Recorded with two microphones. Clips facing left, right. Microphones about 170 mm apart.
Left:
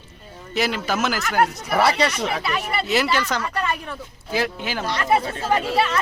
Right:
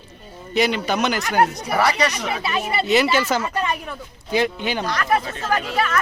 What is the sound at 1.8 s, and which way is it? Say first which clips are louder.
Speech: left 1 dB; 30° left (ahead or behind).